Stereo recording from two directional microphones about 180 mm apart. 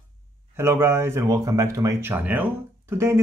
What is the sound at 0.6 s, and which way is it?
Speech, 15° right (ahead or behind).